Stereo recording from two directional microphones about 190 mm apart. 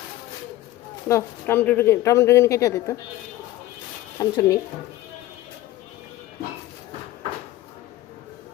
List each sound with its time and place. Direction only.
1.0 s speech: 15° left (ahead or behind)
4.2 s speech: 15° left (ahead or behind)